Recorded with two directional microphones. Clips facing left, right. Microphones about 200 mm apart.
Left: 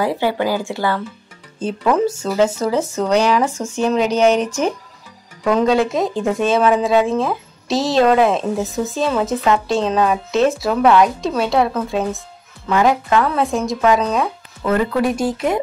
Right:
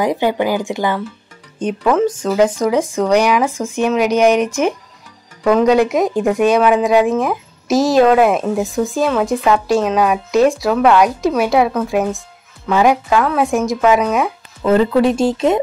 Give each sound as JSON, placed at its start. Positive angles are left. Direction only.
{"t": 0.0, "sound": "speech", "side_deg": -15}
{"t": 1.8, "sound": "speech", "side_deg": -5}
{"t": 5.7, "sound": "speech", "side_deg": -15}
{"t": 7.7, "sound": "speech", "side_deg": -5}
{"t": 9.3, "sound": "speech", "side_deg": -15}
{"t": 13.1, "sound": "speech", "side_deg": 0}
{"t": 13.4, "sound": "speech", "side_deg": -15}
{"t": 14.6, "sound": "speech", "side_deg": -25}